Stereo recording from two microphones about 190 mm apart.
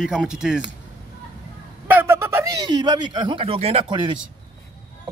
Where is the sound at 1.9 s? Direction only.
10° right (ahead or behind).